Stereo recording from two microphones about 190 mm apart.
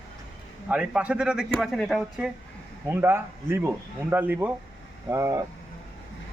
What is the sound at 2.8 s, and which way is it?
Speech, 10° right (ahead or behind).